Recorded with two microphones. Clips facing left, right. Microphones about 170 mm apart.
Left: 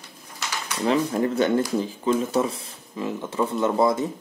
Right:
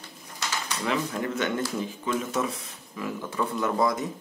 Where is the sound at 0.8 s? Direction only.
35° left (ahead or behind).